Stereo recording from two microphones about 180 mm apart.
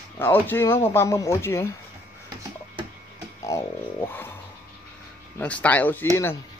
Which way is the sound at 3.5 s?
15° left (ahead or behind).